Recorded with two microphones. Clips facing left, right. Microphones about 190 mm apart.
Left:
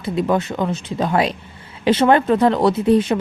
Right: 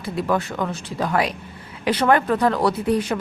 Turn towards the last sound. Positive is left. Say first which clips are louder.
# left 6 dB
turn(degrees=25)  # may be behind; listen again after turning